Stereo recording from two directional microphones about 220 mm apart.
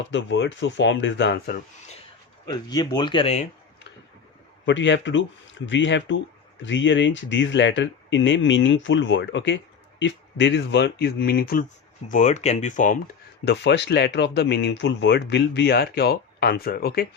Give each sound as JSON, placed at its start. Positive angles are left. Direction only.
{"t": 0.0, "sound": "speech", "side_deg": 55}
{"t": 2.5, "sound": "speech", "side_deg": 20}
{"t": 4.6, "sound": "speech", "side_deg": 55}
{"t": 13.4, "sound": "speech", "side_deg": 50}